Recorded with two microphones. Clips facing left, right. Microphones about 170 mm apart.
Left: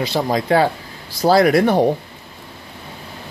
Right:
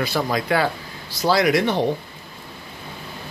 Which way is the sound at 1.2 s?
55° left (ahead or behind).